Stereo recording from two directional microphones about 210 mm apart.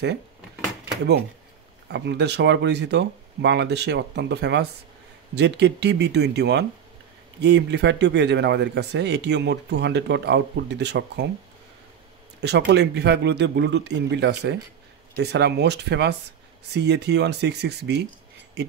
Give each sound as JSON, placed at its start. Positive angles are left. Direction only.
{"t": 1.9, "sound": "a man's voice", "side_deg": -55}
{"t": 12.4, "sound": "a man's voice", "side_deg": -55}